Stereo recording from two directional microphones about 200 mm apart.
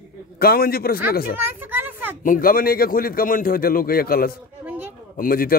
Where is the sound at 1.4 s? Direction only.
10° right (ahead or behind).